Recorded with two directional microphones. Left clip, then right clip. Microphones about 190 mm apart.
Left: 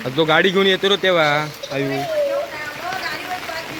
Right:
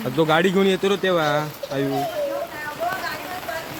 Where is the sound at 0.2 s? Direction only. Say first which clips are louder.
Left 3 dB; 5° right (ahead or behind).